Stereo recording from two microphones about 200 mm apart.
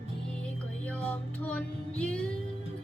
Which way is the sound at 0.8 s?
5° left (ahead or behind).